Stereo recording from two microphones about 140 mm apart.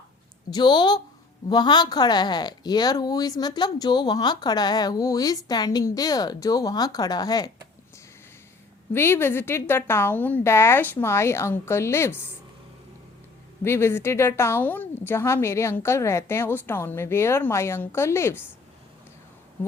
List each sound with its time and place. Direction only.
0.5 s a woman's voice: 35° left (ahead or behind)
8.9 s a woman's voice: 15° left (ahead or behind)
13.7 s a woman's voice: 20° left (ahead or behind)